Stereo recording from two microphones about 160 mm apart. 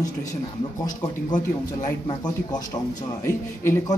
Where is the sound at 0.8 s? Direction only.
25° left (ahead or behind).